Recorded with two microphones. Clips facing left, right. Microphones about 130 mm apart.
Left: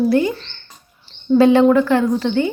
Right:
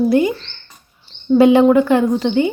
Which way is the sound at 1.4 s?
15° right (ahead or behind).